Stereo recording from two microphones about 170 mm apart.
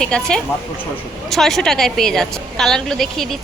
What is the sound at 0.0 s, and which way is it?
A woman's voice, 5° left (ahead or behind).